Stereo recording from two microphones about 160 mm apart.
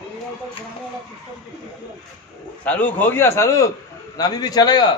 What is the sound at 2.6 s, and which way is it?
A man's voice, 10° left (ahead or behind).